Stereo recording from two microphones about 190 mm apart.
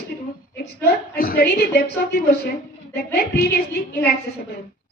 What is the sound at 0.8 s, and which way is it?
A woman's voice, 50° left (ahead or behind).